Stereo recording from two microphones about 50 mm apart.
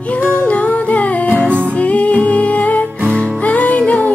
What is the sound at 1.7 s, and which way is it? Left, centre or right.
Music, left.